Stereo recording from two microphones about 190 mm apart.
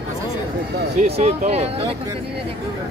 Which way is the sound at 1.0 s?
35° right (ahead or behind).